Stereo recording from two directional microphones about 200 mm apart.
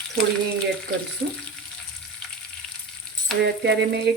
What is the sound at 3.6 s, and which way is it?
Speech, 55° right (ahead or behind).